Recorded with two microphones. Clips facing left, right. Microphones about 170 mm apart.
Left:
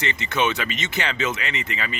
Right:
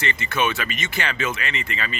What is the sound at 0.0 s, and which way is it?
Speech, 20° left (ahead or behind).